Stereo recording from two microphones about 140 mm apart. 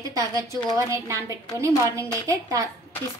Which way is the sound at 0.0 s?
25° right (ahead or behind).